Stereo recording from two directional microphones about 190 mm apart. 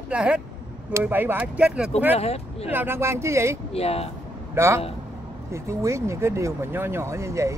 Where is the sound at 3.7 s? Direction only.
30° left (ahead or behind).